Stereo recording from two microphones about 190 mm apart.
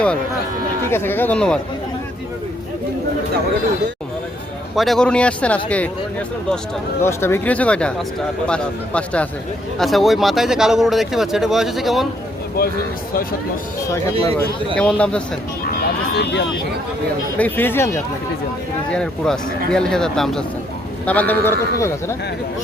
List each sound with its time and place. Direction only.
0.9 s speech: 10° left (ahead or behind)
4.7 s speech: centre (ahead or behind)
12.6 s speech: 50° left (ahead or behind)
14.8 s speech: 5° left (ahead or behind)
15.6 s vehicle: 55° left (ahead or behind)
17.3 s speech: 10° left (ahead or behind)